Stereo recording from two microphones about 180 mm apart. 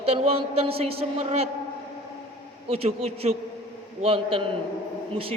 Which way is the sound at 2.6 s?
35° right (ahead or behind).